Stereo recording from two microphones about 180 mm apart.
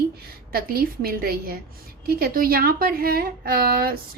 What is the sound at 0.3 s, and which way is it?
A woman's voice, 55° right (ahead or behind).